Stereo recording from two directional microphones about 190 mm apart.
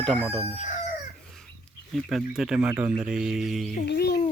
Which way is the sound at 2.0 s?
Centre (ahead or behind).